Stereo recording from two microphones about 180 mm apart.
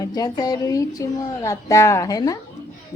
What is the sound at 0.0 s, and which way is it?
Speech, 20° left (ahead or behind).